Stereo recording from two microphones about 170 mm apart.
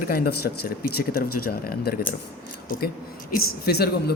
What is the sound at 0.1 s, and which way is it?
Speech, 65° left (ahead or behind).